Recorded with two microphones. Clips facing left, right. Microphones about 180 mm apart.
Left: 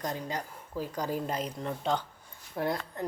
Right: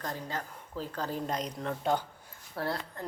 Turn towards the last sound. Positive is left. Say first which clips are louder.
# left 3 dB
turn(degrees=20)  # may be behind; listen again after turning